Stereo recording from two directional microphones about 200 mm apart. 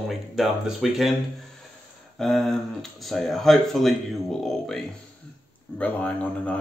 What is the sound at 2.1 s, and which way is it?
Speech, centre (ahead or behind).